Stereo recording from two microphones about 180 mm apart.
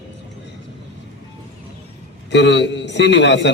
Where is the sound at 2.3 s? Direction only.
80° left.